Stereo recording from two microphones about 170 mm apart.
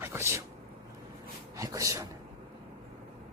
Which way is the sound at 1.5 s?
20° right (ahead or behind).